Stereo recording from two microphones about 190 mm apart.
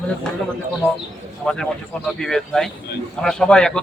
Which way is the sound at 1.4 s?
5° left (ahead or behind).